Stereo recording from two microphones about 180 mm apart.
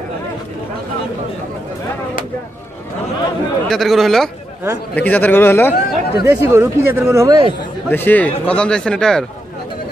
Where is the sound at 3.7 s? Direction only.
Centre (ahead or behind).